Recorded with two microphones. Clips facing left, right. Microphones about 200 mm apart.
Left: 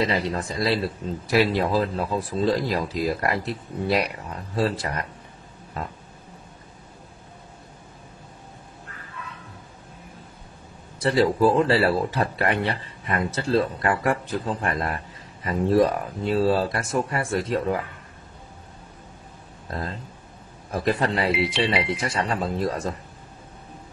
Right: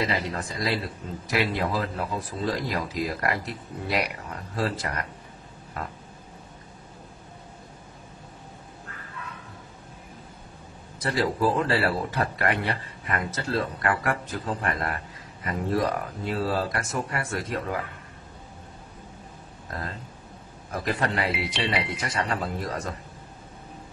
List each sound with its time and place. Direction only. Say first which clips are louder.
0.0 s a man's voice: left 4 dB; 30° left (ahead or behind)
11.0 s speech: left 6 dB; 30° left (ahead or behind)
19.7 s speech: left 4 dB; 30° left (ahead or behind)